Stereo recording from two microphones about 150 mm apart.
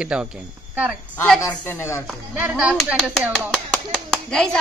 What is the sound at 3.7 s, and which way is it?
Speech, 5° left (ahead or behind).